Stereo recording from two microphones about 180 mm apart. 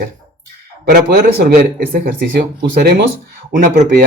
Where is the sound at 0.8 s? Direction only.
55° right (ahead or behind).